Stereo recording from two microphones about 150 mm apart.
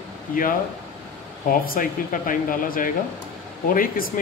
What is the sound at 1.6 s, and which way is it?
Speech, 65° left (ahead or behind).